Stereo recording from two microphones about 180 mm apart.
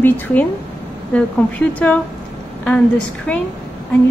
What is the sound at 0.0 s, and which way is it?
Speech, 10° left (ahead or behind).